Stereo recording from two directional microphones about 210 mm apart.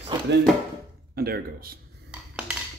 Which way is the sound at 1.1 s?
45° right (ahead or behind).